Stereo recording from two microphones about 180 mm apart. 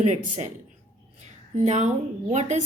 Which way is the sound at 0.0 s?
40° right (ahead or behind).